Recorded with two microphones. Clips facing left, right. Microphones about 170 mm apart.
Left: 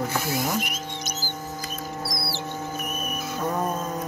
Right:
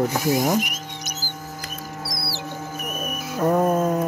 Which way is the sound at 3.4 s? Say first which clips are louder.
Right 9 dB; 60° right (ahead or behind).